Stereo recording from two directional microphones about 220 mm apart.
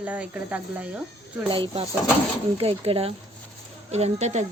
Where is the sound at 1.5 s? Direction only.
25° right (ahead or behind).